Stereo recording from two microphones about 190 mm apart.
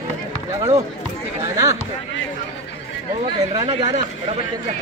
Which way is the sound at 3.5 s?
30° right (ahead or behind).